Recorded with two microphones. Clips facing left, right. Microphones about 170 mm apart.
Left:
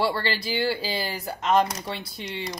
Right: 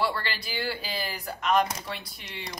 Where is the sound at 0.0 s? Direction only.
30° left (ahead or behind).